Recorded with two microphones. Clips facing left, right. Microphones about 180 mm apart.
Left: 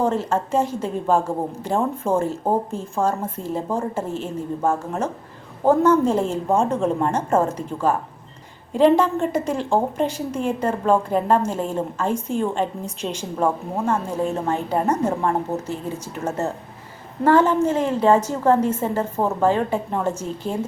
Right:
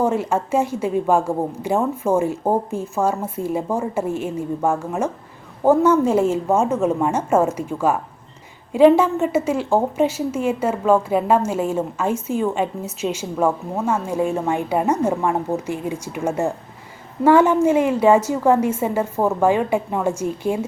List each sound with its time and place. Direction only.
0.0 s a woman's voice: 10° right (ahead or behind)